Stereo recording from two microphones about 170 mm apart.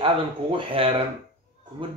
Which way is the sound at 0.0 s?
30° right (ahead or behind).